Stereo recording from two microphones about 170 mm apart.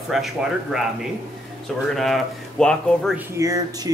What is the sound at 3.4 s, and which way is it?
Speech, 20° right (ahead or behind).